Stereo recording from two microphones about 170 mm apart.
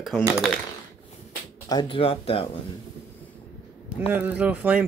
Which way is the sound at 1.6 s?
25° left (ahead or behind).